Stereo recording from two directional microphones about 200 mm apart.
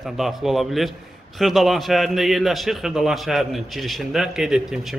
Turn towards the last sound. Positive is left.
turn(degrees=0)  # may be behind; listen again after turning